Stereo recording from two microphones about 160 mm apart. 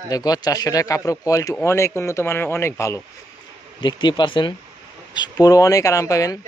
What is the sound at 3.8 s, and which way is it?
A man's voice, 30° left (ahead or behind).